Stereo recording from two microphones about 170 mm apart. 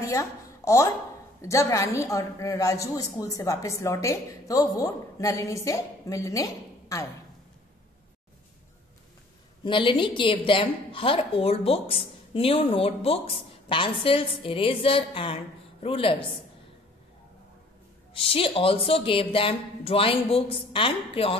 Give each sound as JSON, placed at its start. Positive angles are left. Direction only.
{"t": 0.0, "sound": "a sound", "side_deg": 20}
{"t": 1.4, "sound": "a woman's voice", "side_deg": 15}
{"t": 9.7, "sound": "a woman's voice", "side_deg": 30}
{"t": 18.1, "sound": "a woman's voice", "side_deg": 30}